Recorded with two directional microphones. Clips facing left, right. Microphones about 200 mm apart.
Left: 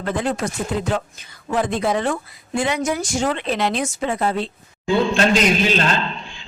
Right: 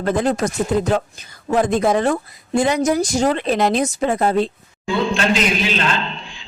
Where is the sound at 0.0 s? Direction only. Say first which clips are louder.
Right 4 dB; 40° right (ahead or behind).